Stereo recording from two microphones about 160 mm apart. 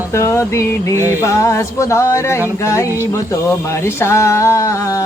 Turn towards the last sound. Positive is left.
turn(degrees=20)  # may be behind; listen again after turning